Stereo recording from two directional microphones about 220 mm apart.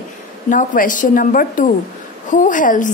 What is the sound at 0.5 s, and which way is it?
A woman's voice, 35° left (ahead or behind).